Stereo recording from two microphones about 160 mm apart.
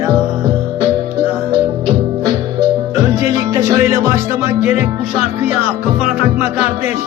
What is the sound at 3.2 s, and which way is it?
Music, 20° right (ahead or behind).